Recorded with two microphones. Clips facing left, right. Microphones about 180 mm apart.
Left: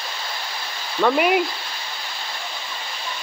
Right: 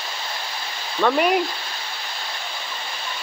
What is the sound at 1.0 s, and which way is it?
Speech, 5° left (ahead or behind).